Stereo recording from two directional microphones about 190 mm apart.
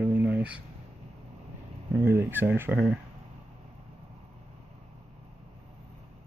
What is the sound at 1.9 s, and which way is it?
Speech, 10° right (ahead or behind).